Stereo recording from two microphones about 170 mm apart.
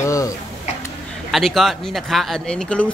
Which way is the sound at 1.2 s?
Centre (ahead or behind).